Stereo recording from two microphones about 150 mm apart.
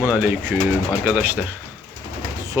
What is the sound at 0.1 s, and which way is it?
Speech, 10° right (ahead or behind).